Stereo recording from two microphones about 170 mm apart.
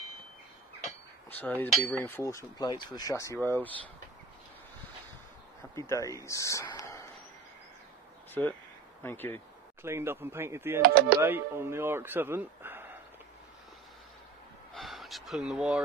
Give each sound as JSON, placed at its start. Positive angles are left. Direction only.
{"t": 1.3, "sound": "cutlery", "side_deg": 10}
{"t": 5.8, "sound": "speech", "side_deg": 20}
{"t": 8.4, "sound": "cutlery", "side_deg": 10}
{"t": 9.8, "sound": "a man's voice", "side_deg": -15}
{"t": 10.8, "sound": "speech", "side_deg": -65}
{"t": 11.1, "sound": "a man's voice", "side_deg": -15}
{"t": 14.7, "sound": "gasp", "side_deg": 0}